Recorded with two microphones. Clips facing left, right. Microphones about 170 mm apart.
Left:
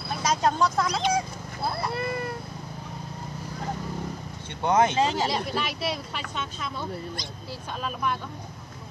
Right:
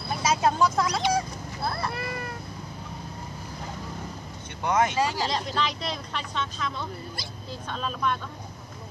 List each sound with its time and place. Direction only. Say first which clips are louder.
0.2 s speech: right 1 dB; 5° right (ahead or behind)
2.0 s speech: left 4 dB; 30° left (ahead or behind)
4.6 s speech: left 2 dB; 25° left (ahead or behind)
5.3 s speech: even; 5° left (ahead or behind)